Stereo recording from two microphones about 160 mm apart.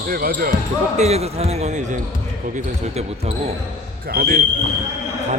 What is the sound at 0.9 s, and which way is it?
A man's voice, 45° right (ahead or behind).